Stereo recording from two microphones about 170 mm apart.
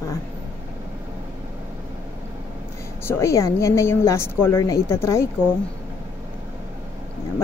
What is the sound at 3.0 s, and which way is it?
A woman's voice, 15° left (ahead or behind).